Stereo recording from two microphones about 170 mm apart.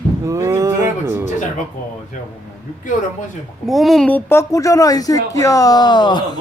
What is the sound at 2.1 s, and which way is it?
Speech, 50° left (ahead or behind).